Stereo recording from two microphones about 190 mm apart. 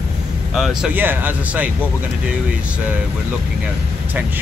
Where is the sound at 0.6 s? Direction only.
5° right (ahead or behind).